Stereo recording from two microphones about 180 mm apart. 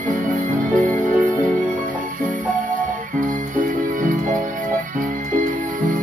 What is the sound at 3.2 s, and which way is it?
Music, 50° right (ahead or behind).